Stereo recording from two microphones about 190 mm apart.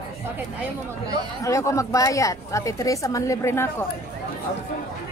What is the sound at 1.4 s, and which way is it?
Speech, 15° left (ahead or behind).